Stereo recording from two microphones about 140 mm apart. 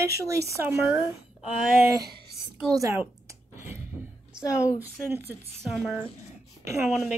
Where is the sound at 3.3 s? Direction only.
20° right (ahead or behind).